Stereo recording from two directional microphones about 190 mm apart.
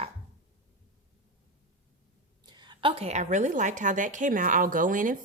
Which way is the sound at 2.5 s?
25° right (ahead or behind).